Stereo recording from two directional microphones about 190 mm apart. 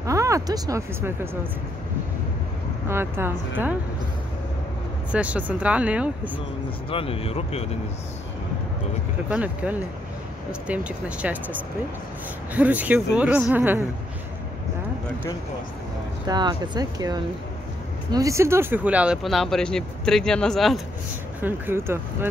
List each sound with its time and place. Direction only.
0.0 s speech: 15° right (ahead or behind)
2.9 s speech: 10° right (ahead or behind)
5.1 s speech: 5° right (ahead or behind)
6.9 s speech: 30° left (ahead or behind)
9.3 s speech: 5° right (ahead or behind)
12.5 s speech: 10° right (ahead or behind)
16.3 s speech: 20° right (ahead or behind); by 20.8 s centre (ahead or behind)
21.4 s speech: 10° right (ahead or behind)